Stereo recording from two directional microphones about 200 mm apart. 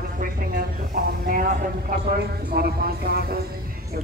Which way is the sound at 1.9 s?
45° right (ahead or behind).